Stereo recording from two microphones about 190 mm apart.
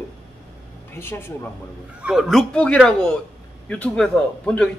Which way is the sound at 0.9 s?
10° left (ahead or behind).